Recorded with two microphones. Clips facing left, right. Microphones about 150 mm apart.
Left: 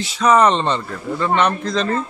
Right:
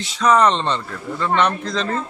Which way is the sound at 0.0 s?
5° left (ahead or behind).